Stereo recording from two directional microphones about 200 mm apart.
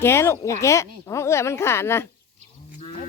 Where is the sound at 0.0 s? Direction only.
10° left (ahead or behind).